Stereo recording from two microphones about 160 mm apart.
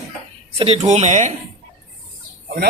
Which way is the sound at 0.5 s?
35° right (ahead or behind).